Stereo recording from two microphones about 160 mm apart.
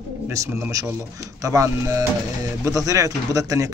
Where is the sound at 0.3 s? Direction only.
15° right (ahead or behind).